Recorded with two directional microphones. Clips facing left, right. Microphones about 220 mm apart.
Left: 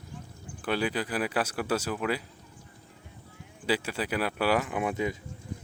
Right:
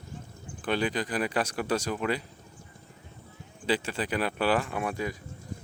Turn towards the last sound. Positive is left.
turn(degrees=20)  # may be behind; listen again after turning